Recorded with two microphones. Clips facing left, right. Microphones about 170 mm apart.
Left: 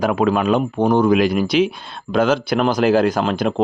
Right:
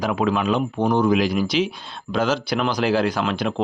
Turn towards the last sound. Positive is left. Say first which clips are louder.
# left 4 dB
turn(degrees=40)  # may be behind; listen again after turning